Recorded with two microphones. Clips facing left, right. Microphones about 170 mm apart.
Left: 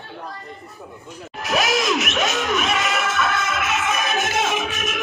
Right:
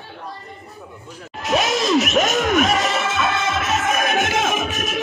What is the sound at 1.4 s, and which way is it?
Music, 25° right (ahead or behind).